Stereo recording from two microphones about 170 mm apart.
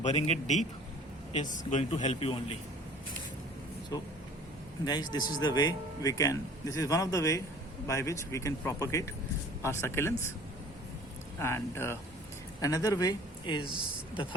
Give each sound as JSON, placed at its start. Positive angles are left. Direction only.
{"t": 0.0, "sound": "speech", "side_deg": 40}
{"t": 1.7, "sound": "speech", "side_deg": 45}
{"t": 3.9, "sound": "speech", "side_deg": 20}
{"t": 11.3, "sound": "speech", "side_deg": 15}